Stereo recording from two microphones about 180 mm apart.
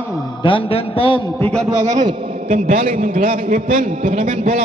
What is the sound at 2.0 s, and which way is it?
Speech, 25° right (ahead or behind).